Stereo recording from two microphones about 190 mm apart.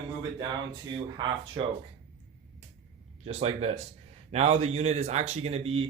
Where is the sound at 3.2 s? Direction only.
35° right (ahead or behind).